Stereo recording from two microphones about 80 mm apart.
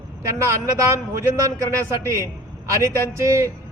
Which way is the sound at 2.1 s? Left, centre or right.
Right.